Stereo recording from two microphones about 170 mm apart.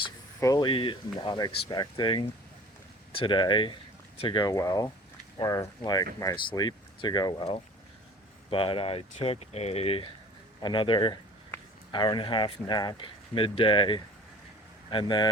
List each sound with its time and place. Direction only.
0.3 s speech: 20° left (ahead or behind)